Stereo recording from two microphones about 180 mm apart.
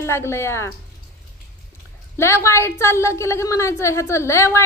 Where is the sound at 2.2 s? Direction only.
15° left (ahead or behind).